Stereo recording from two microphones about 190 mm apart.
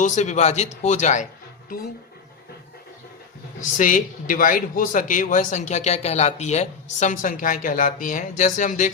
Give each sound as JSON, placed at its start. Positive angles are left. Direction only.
{"t": 0.0, "sound": "speech", "side_deg": 35}
{"t": 3.8, "sound": "a man's voice", "side_deg": 45}